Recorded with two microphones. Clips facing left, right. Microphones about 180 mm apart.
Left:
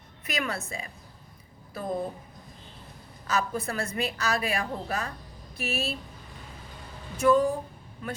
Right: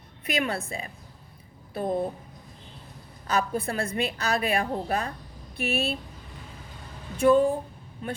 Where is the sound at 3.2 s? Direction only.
30° right (ahead or behind).